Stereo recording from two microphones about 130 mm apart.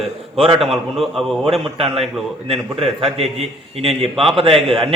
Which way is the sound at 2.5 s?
45° right (ahead or behind).